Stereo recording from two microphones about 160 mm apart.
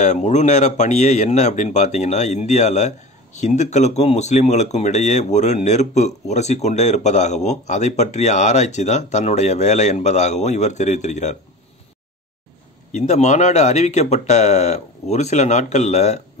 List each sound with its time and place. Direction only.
0.0 s speech: 45° left (ahead or behind)
12.9 s speech: 45° left (ahead or behind)